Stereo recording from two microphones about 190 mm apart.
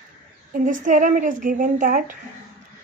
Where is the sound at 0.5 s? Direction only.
45° right (ahead or behind).